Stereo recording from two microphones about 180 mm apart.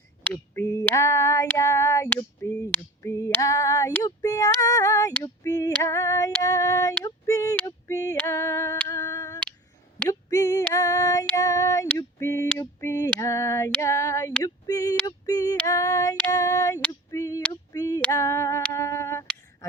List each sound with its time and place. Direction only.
0.3 s female singing: 15° left (ahead or behind)
17.1 s a sound: 20° left (ahead or behind)
18.0 s female singing: 15° left (ahead or behind)